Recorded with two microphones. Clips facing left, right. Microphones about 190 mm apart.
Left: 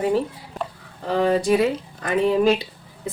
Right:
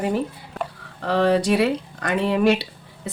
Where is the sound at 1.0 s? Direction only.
70° right (ahead or behind).